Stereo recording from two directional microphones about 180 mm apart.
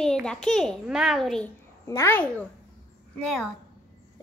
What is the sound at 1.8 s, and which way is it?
Speech, 15° left (ahead or behind).